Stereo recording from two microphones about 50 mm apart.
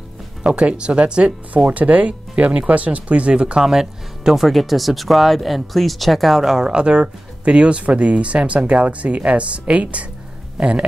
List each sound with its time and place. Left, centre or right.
0.6 s speech: centre
3.6 s speech: centre
4.5 s speech: centre
6.6 s speech: centre